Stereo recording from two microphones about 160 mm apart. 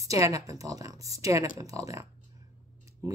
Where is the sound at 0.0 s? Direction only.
20° right (ahead or behind).